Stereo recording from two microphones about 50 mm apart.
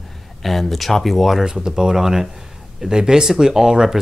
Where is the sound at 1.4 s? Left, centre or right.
Centre.